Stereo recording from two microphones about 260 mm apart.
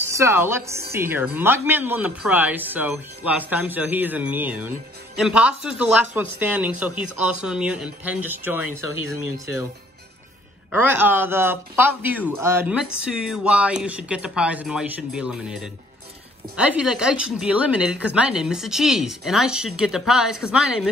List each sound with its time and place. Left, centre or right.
0.1 s speech: centre
8.8 s speech: left
10.7 s speech: centre